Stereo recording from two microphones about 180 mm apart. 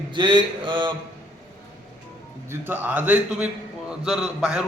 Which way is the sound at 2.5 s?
10° right (ahead or behind).